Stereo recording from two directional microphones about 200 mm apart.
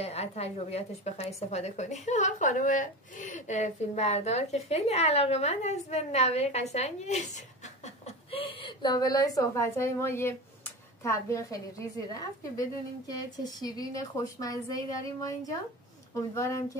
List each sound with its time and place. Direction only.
0.0 s a woman's voice: 30° left (ahead or behind)
16.3 s a woman's voice: 15° left (ahead or behind)